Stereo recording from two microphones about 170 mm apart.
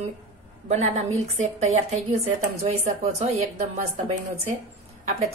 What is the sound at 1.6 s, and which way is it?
A woman's voice, 40° right (ahead or behind).